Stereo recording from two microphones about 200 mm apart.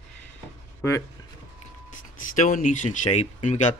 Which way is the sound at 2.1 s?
40° left (ahead or behind).